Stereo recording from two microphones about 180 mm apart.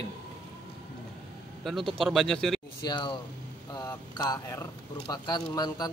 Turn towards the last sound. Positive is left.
turn(degrees=25)  # may be behind; listen again after turning